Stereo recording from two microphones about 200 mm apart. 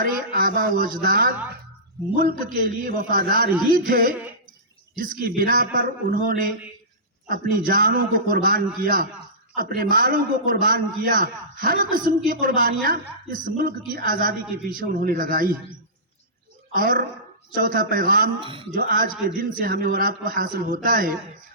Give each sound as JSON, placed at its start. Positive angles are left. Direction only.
{"t": 0.0, "sound": "a man's voice", "side_deg": -45}
{"t": 2.4, "sound": "a man's voice", "side_deg": -45}
{"t": 16.7, "sound": "a man's voice", "side_deg": -45}
{"t": 18.3, "sound": "speech", "side_deg": -25}
{"t": 18.7, "sound": "a man's voice", "side_deg": -45}